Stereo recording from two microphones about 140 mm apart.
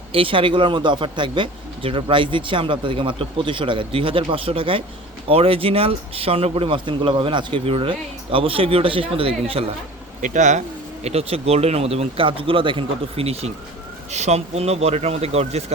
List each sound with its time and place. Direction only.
0.1 s speech: 40° right (ahead or behind)
10.2 s speech: 65° right (ahead or behind)
11.0 s speech: 50° right (ahead or behind)